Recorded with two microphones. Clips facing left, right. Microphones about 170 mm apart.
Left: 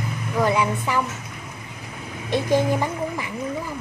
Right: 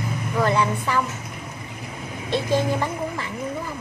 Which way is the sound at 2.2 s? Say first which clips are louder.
Left 2 dB; 15° left (ahead or behind).